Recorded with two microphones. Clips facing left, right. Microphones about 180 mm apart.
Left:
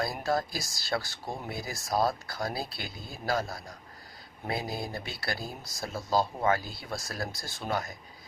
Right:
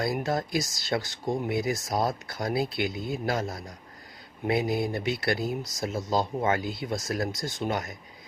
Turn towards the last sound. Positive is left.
turn(degrees=-20)  # may be behind; listen again after turning